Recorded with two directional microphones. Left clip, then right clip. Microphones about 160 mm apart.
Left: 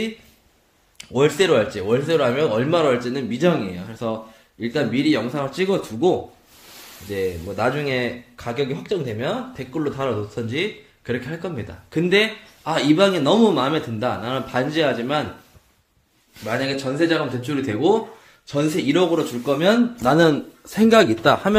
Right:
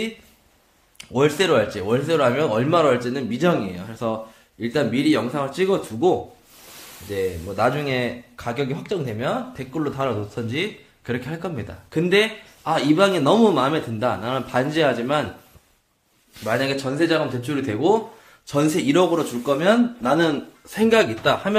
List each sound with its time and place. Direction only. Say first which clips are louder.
0.9 s a man's voice: left 1 dB; 5° left (ahead or behind)
16.4 s a man's voice: right 1 dB; 5° right (ahead or behind)
19.4 s speech: even; 20° left (ahead or behind)